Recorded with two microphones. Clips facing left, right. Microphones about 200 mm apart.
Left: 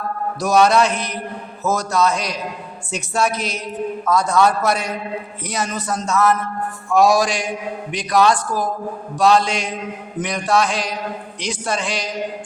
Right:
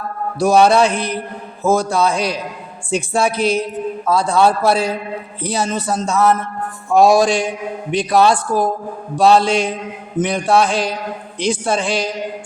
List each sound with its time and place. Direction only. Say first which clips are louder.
0.3 s mantra: right 3 dB; 30° right (ahead or behind)
4.0 s a man's voice: right 2 dB; 30° right (ahead or behind)
9.1 s mantra: right 4 dB; 30° right (ahead or behind)